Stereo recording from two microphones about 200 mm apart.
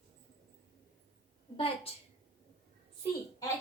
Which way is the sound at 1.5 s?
25° left (ahead or behind).